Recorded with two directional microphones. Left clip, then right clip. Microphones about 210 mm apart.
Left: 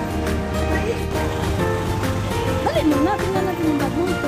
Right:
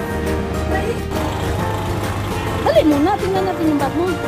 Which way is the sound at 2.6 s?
20° right (ahead or behind).